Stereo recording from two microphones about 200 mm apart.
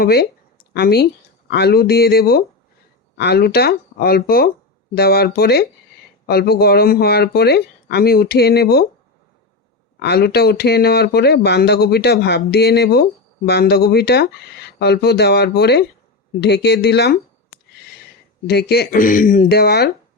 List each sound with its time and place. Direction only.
0.0 s speech: 50° left (ahead or behind)
10.0 s speech: 55° left (ahead or behind)
18.4 s speech: 50° left (ahead or behind)